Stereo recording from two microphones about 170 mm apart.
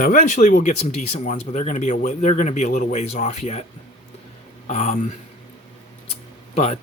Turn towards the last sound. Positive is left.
turn(degrees=40)  # may be behind; listen again after turning